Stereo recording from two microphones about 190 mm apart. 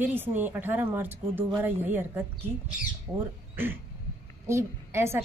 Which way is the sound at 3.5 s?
10° right (ahead or behind).